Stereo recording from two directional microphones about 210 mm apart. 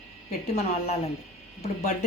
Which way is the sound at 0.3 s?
30° left (ahead or behind).